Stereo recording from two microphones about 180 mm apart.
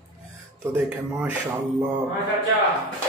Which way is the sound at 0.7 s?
10° right (ahead or behind).